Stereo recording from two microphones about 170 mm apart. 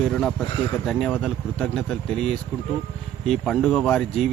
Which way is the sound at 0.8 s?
Centre (ahead or behind).